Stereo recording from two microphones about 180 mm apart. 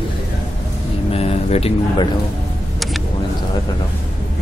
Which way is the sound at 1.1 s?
35° left (ahead or behind).